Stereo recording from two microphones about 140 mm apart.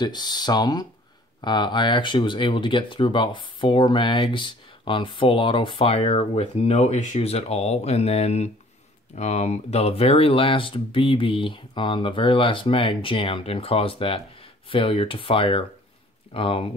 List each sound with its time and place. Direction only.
0.0 s speech: 30° left (ahead or behind)